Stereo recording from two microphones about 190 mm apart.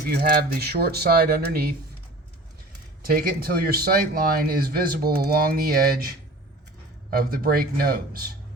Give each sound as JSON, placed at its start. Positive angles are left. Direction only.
{"t": 0.0, "sound": "speech", "side_deg": -55}
{"t": 3.1, "sound": "speech", "side_deg": -50}